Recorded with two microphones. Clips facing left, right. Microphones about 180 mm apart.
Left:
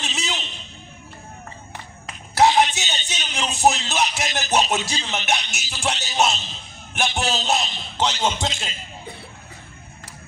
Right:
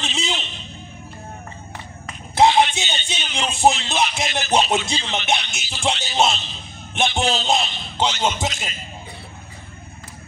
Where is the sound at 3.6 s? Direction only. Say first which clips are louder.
Right 2 dB; 20° right (ahead or behind).